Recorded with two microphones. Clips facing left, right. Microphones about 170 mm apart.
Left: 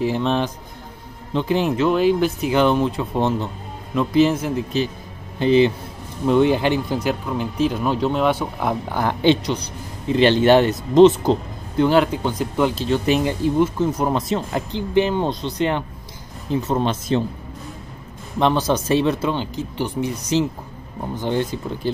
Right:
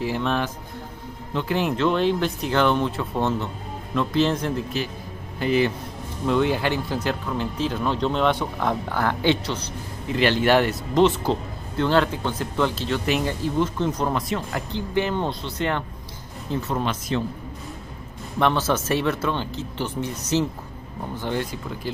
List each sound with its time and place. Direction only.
0.0 s speech: 20° left (ahead or behind)
5.4 s speech: 25° left (ahead or behind); by 14.0 s 10° left (ahead or behind)
14.0 s speech: 25° left (ahead or behind)
16.6 s speech: 30° left (ahead or behind)
18.4 s speech: 15° left (ahead or behind)